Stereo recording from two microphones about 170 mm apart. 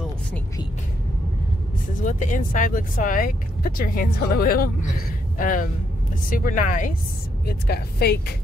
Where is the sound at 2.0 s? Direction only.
50° left (ahead or behind).